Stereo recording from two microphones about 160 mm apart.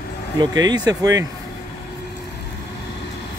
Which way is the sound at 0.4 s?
25° right (ahead or behind).